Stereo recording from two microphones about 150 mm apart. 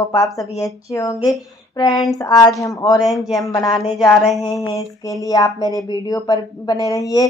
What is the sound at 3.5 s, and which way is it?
Speech, 25° left (ahead or behind).